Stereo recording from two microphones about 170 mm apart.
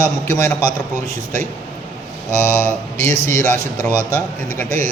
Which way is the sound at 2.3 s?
15° left (ahead or behind).